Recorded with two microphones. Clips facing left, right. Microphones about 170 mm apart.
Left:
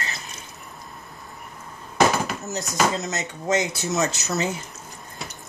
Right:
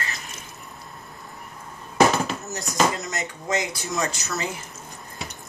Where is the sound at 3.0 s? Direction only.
25° left (ahead or behind).